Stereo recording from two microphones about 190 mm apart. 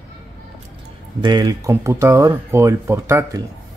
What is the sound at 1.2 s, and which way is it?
Speech, 20° right (ahead or behind).